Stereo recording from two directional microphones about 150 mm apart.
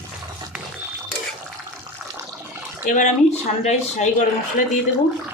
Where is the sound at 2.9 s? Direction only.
55° left (ahead or behind).